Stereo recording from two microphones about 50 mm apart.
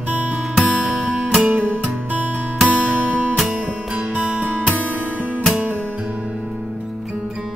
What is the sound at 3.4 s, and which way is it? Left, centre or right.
Music, centre.